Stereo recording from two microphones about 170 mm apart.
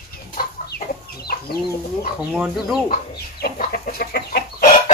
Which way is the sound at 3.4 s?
55° left (ahead or behind).